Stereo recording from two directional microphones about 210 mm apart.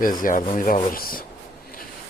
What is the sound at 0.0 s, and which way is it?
Rub, 40° left (ahead or behind).